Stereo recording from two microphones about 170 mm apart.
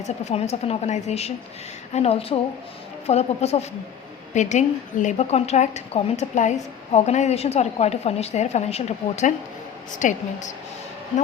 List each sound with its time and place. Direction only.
0.0 s a woman's voice: 40° left (ahead or behind)